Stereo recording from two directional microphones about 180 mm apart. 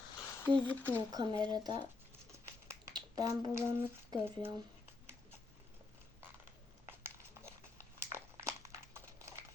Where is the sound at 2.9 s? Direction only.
20° right (ahead or behind).